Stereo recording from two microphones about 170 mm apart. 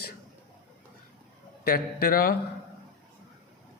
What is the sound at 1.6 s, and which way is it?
Speech, 60° left (ahead or behind).